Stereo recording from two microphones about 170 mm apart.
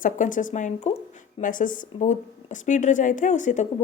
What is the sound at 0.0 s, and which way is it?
Speech, 50° left (ahead or behind).